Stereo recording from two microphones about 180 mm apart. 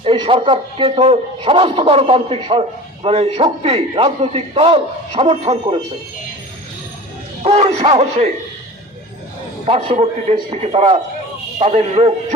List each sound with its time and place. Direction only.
0.0 s a man's voice: 30° right (ahead or behind)
7.4 s a man's voice: 35° right (ahead or behind)
9.6 s a man's voice: 35° right (ahead or behind)